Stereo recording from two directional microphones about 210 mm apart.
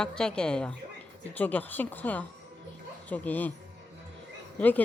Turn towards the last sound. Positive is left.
turn(degrees=5)  # may be behind; listen again after turning